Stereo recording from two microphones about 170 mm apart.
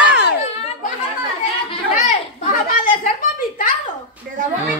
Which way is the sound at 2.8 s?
55° left (ahead or behind).